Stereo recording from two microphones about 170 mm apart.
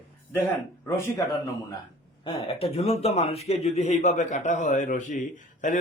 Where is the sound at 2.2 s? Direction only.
35° left (ahead or behind).